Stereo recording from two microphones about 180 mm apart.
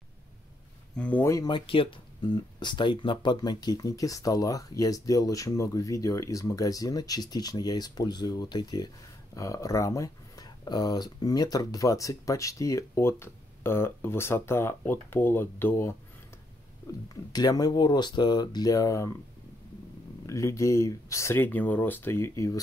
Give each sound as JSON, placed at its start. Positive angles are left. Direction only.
{"t": 0.9, "sound": "speech", "side_deg": 10}
{"t": 17.1, "sound": "speech", "side_deg": 20}
{"t": 20.2, "sound": "speech", "side_deg": 15}